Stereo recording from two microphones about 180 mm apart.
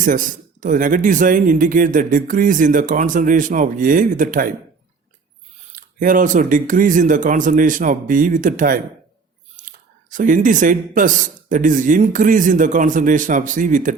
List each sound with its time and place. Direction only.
0.0 s speech: 45° right (ahead or behind)
5.7 s speech: 50° right (ahead or behind)